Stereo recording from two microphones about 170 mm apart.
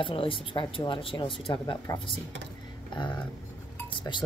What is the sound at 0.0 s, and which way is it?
Speech, 30° left (ahead or behind).